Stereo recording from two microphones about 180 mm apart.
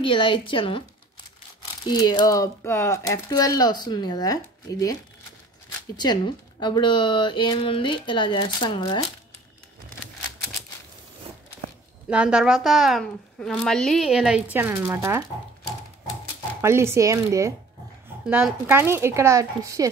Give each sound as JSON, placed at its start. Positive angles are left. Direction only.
{"t": 0.0, "sound": "speech", "side_deg": 30}
{"t": 1.9, "sound": "speech", "side_deg": 25}
{"t": 5.9, "sound": "speech", "side_deg": 25}
{"t": 12.1, "sound": "a woman's voice", "side_deg": -5}
{"t": 16.6, "sound": "speech", "side_deg": -15}